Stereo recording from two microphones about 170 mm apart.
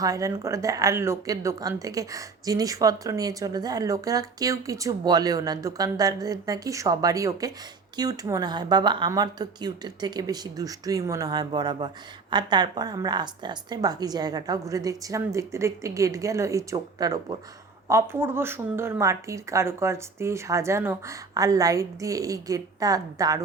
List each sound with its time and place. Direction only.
0.0 s speech: 20° right (ahead or behind)